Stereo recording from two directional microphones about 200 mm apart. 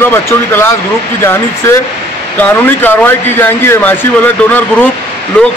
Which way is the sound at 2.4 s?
10° left (ahead or behind).